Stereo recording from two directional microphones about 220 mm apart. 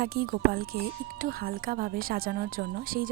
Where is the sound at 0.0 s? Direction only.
45° right (ahead or behind).